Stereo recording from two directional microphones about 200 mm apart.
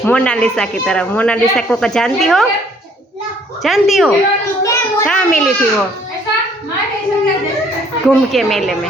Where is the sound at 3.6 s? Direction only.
Centre (ahead or behind).